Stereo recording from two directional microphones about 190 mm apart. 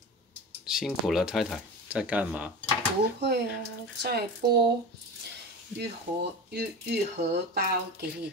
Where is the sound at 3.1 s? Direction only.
60° right (ahead or behind).